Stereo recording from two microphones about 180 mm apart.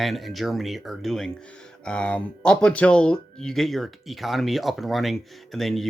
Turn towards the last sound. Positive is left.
turn(degrees=0)  # may be behind; listen again after turning